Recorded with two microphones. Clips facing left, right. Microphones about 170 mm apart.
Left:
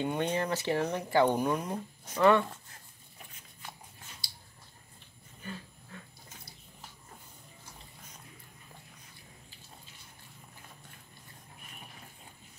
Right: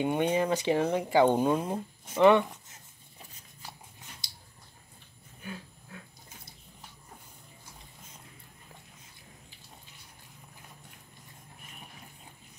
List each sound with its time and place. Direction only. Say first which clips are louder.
0.0 s speech: right 4 dB; 15° right (ahead or behind)
4.2 s a sound: even; 20° right (ahead or behind)
5.4 s dog: right 1 dB; 5° right (ahead or behind)